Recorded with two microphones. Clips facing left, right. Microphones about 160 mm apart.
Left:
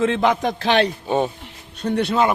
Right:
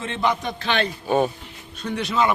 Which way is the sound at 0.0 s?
90° left.